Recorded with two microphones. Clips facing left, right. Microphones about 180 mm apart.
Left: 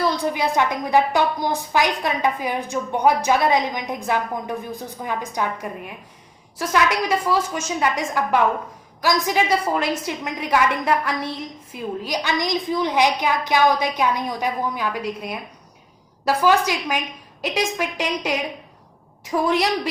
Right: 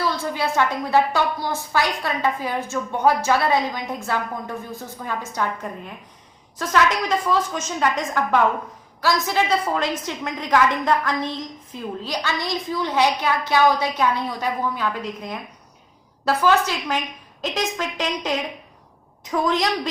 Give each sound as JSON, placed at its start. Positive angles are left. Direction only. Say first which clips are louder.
{"t": 0.0, "sound": "a woman's voice", "louder": "left 3 dB", "side_deg": 15}